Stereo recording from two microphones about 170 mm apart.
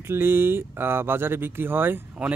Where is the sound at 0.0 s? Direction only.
15° right (ahead or behind).